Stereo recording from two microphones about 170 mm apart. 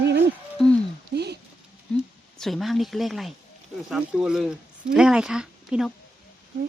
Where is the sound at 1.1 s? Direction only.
75° right (ahead or behind).